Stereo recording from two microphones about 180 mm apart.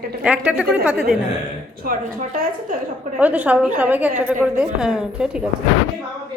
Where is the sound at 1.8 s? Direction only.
55° right (ahead or behind).